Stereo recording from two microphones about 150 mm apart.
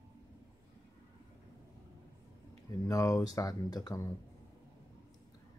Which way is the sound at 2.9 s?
20° left (ahead or behind).